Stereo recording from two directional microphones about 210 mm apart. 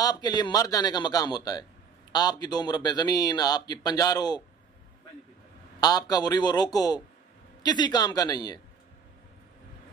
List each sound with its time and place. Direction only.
0.0 s a man's voice: 20° left (ahead or behind)
5.8 s a man's voice: 20° left (ahead or behind)